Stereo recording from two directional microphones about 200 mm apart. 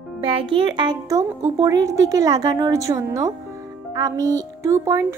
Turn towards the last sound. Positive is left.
turn(degrees=-15)  # may be behind; listen again after turning